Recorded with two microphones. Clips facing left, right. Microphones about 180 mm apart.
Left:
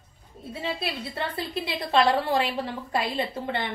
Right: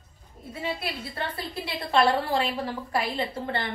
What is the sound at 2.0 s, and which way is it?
A woman's voice, 25° left (ahead or behind).